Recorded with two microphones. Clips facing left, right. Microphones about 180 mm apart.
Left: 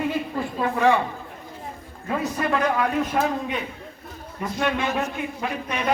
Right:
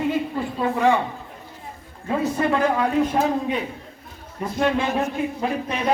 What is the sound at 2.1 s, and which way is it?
A man's voice, 25° right (ahead or behind).